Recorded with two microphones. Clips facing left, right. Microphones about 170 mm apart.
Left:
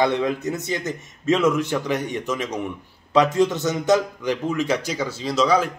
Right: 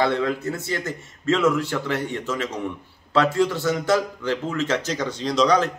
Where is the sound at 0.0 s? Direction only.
20° left (ahead or behind).